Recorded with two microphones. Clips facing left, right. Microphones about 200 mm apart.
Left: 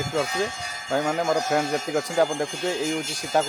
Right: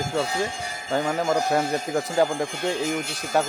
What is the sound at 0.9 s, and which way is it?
Speech, centre (ahead or behind).